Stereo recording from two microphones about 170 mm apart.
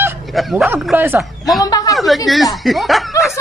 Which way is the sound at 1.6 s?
20° left (ahead or behind).